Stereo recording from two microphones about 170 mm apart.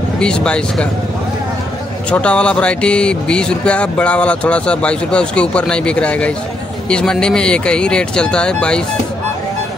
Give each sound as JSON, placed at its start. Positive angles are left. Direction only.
{"t": 0.2, "sound": "speech", "side_deg": 5}
{"t": 2.0, "sound": "speech", "side_deg": 5}